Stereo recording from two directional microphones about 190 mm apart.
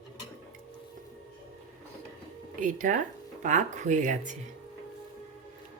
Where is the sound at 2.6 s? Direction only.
45° right (ahead or behind).